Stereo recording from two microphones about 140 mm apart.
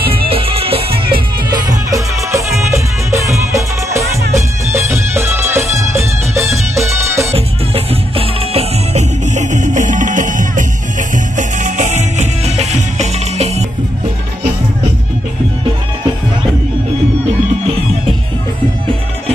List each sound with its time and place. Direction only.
0.0 s music: 40° right (ahead or behind)
1.7 s music: 25° right (ahead or behind)
7.2 s music: 45° right (ahead or behind)
9.2 s music: 60° right (ahead or behind)